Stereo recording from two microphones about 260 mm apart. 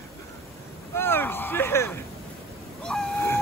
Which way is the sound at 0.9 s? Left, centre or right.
Centre.